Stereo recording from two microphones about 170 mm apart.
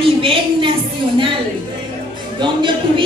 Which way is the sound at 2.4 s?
30° right (ahead or behind).